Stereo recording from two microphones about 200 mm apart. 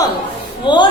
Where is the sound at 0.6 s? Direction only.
25° left (ahead or behind).